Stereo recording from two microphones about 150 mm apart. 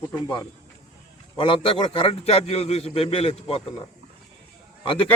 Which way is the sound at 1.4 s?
35° left (ahead or behind).